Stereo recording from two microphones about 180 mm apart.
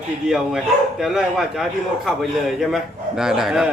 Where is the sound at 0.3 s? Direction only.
5° right (ahead or behind).